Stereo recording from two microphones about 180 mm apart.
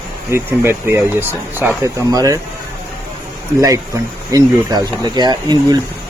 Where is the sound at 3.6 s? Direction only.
20° right (ahead or behind).